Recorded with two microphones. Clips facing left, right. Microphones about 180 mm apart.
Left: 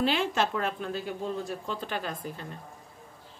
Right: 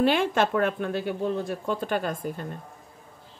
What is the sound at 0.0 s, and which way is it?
Speech, 55° right (ahead or behind).